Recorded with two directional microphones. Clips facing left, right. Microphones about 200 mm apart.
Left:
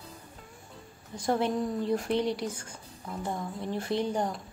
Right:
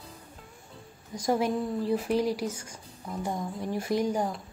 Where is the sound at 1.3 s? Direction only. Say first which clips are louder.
Right 1 dB; 10° right (ahead or behind).